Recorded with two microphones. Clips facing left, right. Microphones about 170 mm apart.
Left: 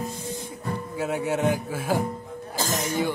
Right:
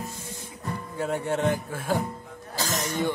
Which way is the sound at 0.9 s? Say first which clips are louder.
Left 1 dB; 5° left (ahead or behind).